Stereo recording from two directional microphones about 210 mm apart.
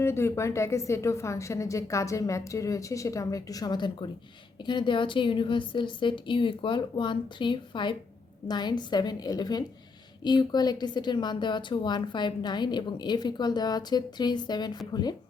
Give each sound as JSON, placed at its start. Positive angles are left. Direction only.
{"t": 0.0, "sound": "a woman's voice", "side_deg": 10}